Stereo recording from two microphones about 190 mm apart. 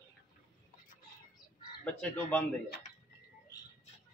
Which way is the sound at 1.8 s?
10° left (ahead or behind).